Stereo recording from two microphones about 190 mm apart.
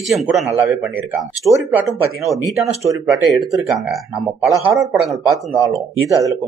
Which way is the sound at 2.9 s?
20° right (ahead or behind).